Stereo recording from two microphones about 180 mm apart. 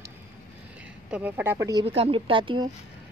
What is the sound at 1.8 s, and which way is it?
Speech, 35° right (ahead or behind).